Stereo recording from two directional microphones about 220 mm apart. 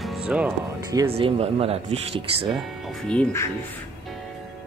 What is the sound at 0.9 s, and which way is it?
Speech, 25° right (ahead or behind).